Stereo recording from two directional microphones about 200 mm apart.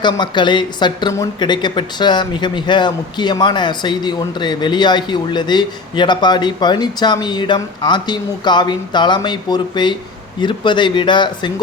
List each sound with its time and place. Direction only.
0.0 s a woman's voice: 20° left (ahead or behind)